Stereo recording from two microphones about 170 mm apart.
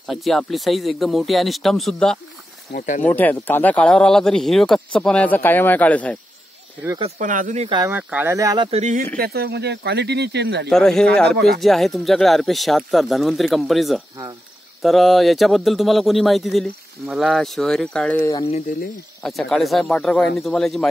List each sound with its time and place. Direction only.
0.0 s speech: centre (ahead or behind)
2.7 s speech: 45° left (ahead or behind)
3.0 s speech: 10° left (ahead or behind)
7.2 s speech: 50° right (ahead or behind)
7.9 s speech: 10° right (ahead or behind)
8.6 s speech: 35° right (ahead or behind)
9.1 s speech: 65° right (ahead or behind); by 10.7 s 90° right
10.7 s speech: 5° left (ahead or behind)
19.2 s speech: centre (ahead or behind)